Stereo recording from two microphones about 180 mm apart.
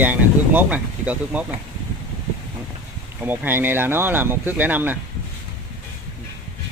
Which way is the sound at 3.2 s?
10° right (ahead or behind).